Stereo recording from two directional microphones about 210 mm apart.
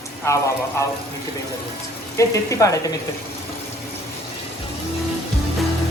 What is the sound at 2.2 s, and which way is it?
Speech, 15° left (ahead or behind).